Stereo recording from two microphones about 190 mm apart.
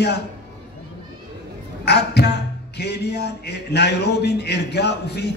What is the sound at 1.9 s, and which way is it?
Speech, 60° left (ahead or behind).